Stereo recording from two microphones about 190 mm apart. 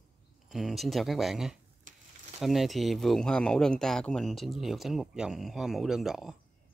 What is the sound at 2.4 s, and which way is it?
Speech, centre (ahead or behind).